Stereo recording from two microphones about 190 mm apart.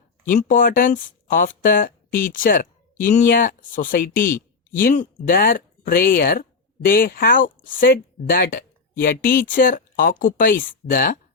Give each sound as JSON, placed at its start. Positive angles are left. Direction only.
{"t": 0.3, "sound": "speech", "side_deg": 45}